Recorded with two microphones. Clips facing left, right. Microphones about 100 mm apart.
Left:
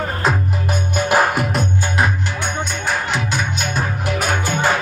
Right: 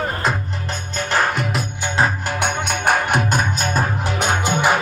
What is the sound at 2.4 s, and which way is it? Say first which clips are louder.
Music: right 5 dB; 60° right (ahead or behind).